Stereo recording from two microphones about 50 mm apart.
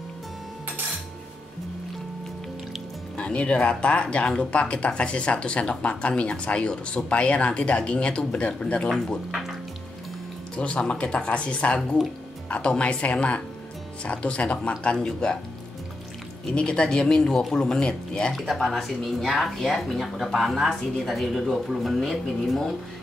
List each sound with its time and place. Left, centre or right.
3.2 s speech: left
9.3 s speech: centre
10.5 s speech: left
16.5 s speech: centre
18.3 s a woman's voice: centre